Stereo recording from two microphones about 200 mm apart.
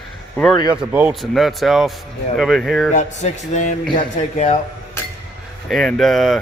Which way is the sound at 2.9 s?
35° left (ahead or behind).